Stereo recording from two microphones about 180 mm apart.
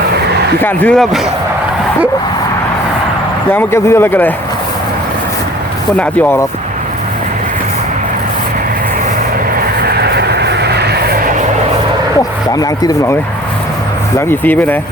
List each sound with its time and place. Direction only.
0.6 s speech: 10° left (ahead or behind)
3.5 s speech: 10° left (ahead or behind)
6.0 s speech: 10° left (ahead or behind)
9.6 s vehicle: 60° right (ahead or behind)
12.5 s speech: 20° left (ahead or behind)
14.2 s speech: 10° left (ahead or behind)